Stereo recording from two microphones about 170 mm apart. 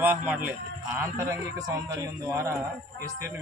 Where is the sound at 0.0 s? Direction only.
10° right (ahead or behind).